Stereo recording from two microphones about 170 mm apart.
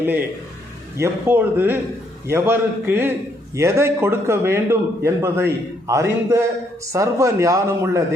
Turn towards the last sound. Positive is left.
turn(degrees=-15)  # may be behind; listen again after turning